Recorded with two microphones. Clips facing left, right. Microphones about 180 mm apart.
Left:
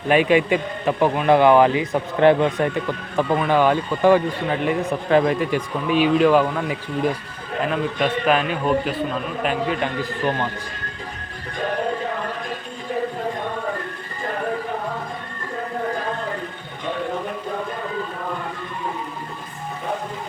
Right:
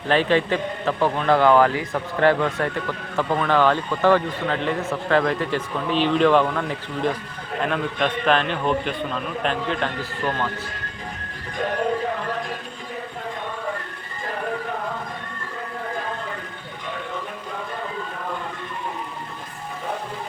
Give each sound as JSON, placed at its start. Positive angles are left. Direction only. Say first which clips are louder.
{"t": 0.1, "sound": "a man's voice", "louder": "left 3 dB", "side_deg": 10}